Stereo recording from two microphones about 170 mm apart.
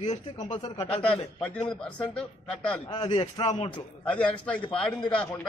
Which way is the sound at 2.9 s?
25° left (ahead or behind).